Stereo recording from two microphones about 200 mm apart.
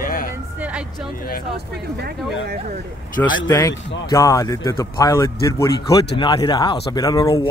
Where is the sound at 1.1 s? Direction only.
45° left (ahead or behind).